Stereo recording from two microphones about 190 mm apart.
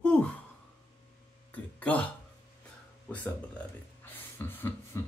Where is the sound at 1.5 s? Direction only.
10° left (ahead or behind).